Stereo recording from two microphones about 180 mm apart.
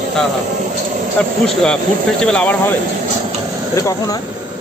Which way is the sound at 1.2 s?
5° left (ahead or behind).